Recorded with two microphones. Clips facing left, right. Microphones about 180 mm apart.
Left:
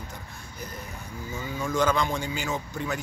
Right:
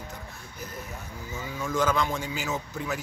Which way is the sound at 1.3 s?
Centre (ahead or behind).